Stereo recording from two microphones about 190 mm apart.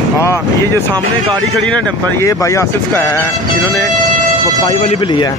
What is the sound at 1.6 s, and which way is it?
Speech, 5° left (ahead or behind).